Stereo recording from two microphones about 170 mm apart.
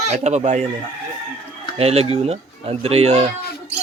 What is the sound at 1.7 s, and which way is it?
Speech, 35° right (ahead or behind).